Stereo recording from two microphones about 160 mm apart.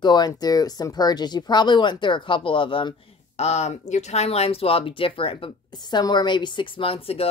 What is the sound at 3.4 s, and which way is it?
Speech, 45° left (ahead or behind).